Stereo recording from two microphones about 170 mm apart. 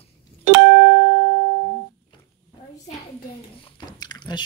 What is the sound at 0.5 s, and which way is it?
Music, 85° right.